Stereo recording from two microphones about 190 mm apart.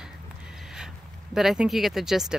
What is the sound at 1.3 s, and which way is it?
Speech, centre (ahead or behind).